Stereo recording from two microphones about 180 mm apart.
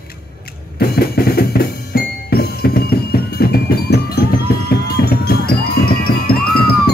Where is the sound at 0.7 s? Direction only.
60° left (ahead or behind).